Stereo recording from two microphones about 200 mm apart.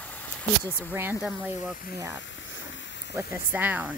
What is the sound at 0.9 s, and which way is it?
Speech, 10° right (ahead or behind).